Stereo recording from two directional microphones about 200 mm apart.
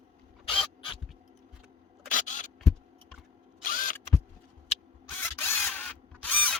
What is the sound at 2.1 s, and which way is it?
Camera, 40° left (ahead or behind).